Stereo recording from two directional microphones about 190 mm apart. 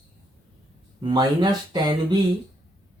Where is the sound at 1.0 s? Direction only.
25° right (ahead or behind).